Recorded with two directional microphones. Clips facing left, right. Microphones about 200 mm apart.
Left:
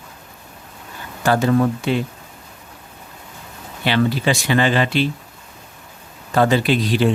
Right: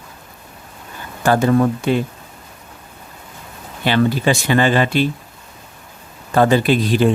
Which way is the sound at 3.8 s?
45° right (ahead or behind).